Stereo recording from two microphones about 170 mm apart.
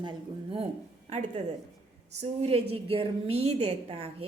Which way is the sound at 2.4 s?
35° right (ahead or behind).